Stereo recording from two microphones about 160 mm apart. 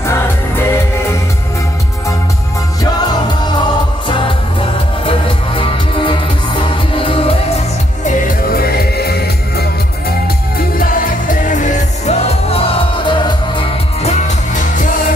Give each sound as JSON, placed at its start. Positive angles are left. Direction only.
{"t": 0.0, "sound": "music", "side_deg": 15}
{"t": 5.6, "sound": "music", "side_deg": 30}
{"t": 8.3, "sound": "music", "side_deg": 70}
{"t": 10.8, "sound": "music", "side_deg": 60}
{"t": 14.2, "sound": "music", "side_deg": 50}